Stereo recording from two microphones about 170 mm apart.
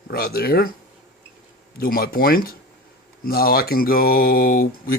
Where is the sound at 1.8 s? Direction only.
60° left (ahead or behind).